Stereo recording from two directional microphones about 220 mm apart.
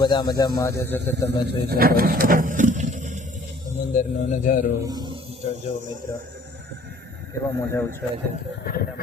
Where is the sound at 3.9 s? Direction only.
35° left (ahead or behind).